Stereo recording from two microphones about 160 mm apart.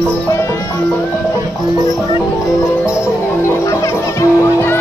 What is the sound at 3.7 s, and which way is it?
Music, 15° left (ahead or behind).